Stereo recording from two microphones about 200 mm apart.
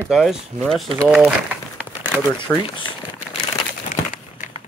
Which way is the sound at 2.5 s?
25° left (ahead or behind).